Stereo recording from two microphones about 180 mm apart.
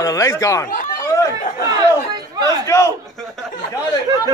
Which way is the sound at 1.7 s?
20° right (ahead or behind).